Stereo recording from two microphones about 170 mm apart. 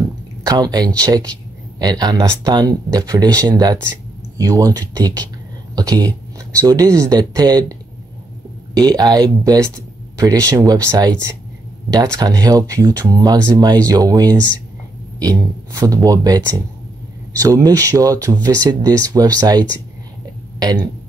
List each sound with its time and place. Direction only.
0.5 s speech: 25° right (ahead or behind)
8.7 s speech: 20° right (ahead or behind)